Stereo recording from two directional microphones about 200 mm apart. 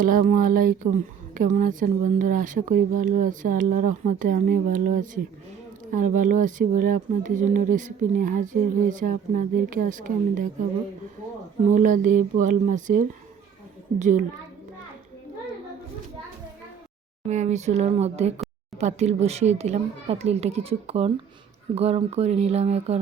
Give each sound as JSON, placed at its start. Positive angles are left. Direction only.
{"t": 0.0, "sound": "speech", "side_deg": -40}
{"t": 11.7, "sound": "speech", "side_deg": -40}
{"t": 17.2, "sound": "speech", "side_deg": -35}